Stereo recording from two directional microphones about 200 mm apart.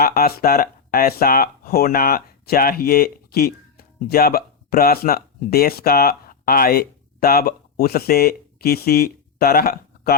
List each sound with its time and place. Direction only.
0.0 s speech: 50° left (ahead or behind)